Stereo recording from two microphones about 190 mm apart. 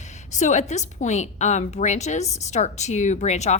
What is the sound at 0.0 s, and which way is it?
A woman's voice, 40° left (ahead or behind).